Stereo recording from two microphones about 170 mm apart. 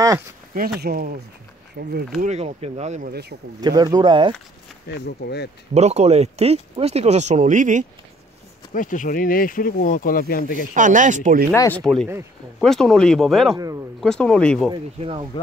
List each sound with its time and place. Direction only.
0.7 s speech: 65° right (ahead or behind)
2.2 s speech: 40° right (ahead or behind)
3.1 s speech: 75° right (ahead or behind)
3.6 s speech: 25° right (ahead or behind)
4.8 s speech: 75° left (ahead or behind)
5.8 s speech: 40° right (ahead or behind)
8.7 s speech: 50° left (ahead or behind)
10.7 s speech: 50° right (ahead or behind)
11.5 s speech: 15° left (ahead or behind)
11.8 s speech: 5° left (ahead or behind)
14.7 s speech: 30° right (ahead or behind)